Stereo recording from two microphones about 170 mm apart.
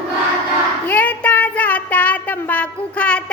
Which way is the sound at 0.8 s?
10° left (ahead or behind).